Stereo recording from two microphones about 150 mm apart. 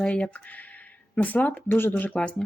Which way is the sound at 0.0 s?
5° left (ahead or behind).